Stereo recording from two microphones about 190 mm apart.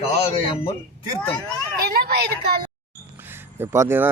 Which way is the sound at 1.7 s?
55° right (ahead or behind).